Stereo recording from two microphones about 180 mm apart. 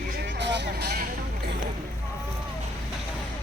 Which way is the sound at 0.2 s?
75° right (ahead or behind).